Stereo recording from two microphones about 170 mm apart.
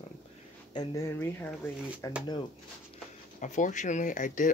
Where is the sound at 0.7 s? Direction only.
15° left (ahead or behind).